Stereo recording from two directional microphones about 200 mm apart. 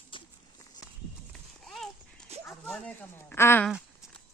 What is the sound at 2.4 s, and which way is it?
Speech, 10° left (ahead or behind).